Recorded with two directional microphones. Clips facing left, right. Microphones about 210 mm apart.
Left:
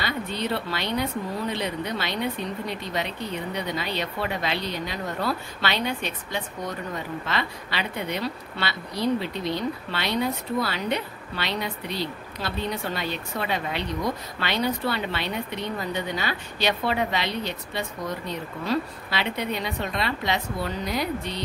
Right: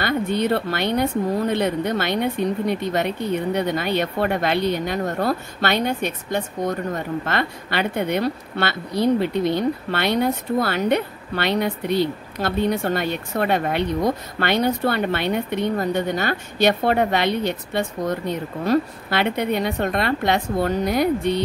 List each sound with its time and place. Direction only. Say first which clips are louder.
0.0 s speech: right 8 dB; 55° right (ahead or behind)